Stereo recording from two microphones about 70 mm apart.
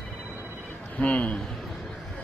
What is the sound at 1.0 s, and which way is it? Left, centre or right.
Speech, centre.